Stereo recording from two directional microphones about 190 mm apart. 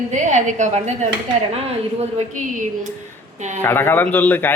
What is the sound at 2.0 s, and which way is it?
Speech, 40° right (ahead or behind).